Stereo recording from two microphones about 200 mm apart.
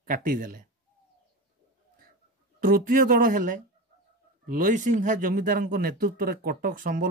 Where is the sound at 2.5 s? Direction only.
45° right (ahead or behind).